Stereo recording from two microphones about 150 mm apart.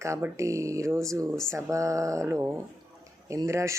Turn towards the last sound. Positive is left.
turn(degrees=-20)  # may be behind; listen again after turning